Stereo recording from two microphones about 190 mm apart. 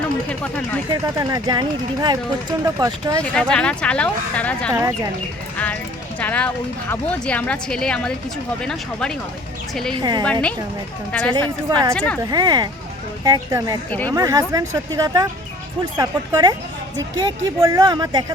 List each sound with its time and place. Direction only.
0.3 s speech: 5° left (ahead or behind)
1.0 s speech: 20° right (ahead or behind)
3.3 s speech: 5° left (ahead or behind)
4.7 s speech: 15° right (ahead or behind)
6.1 s speech: 5° left (ahead or behind)
9.9 s speech: 20° right (ahead or behind)
11.1 s speech: 10° left (ahead or behind)
11.3 s speech: 25° right (ahead or behind)